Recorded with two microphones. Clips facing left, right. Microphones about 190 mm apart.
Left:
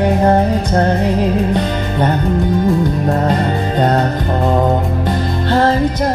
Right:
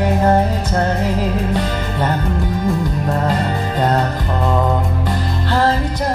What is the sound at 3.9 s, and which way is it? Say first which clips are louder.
Mantra: left 3 dB; 25° left (ahead or behind).